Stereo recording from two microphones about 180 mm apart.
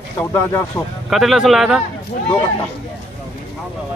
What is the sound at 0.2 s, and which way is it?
Speech, 15° left (ahead or behind).